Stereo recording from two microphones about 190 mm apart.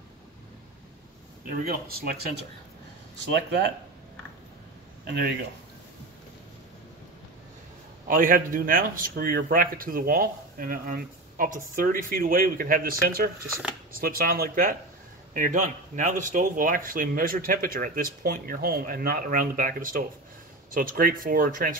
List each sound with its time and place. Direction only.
1.4 s a man's voice: 50° right (ahead or behind)
5.0 s speech: 60° right (ahead or behind)
8.1 s a man's voice: 45° right (ahead or behind)